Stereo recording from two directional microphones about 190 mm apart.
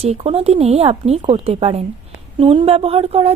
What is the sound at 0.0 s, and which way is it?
A child's voice, 30° right (ahead or behind).